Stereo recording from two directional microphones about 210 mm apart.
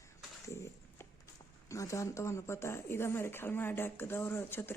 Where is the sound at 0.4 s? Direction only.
15° left (ahead or behind).